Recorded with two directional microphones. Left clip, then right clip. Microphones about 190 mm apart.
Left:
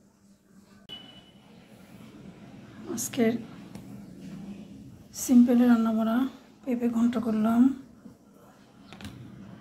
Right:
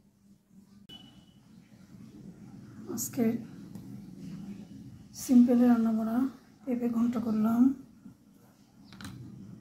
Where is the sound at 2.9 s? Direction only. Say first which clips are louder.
Left 5 dB; 20° left (ahead or behind).